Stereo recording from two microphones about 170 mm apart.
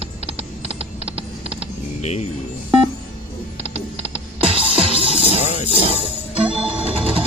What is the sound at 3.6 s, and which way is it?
Typing, 35° right (ahead or behind).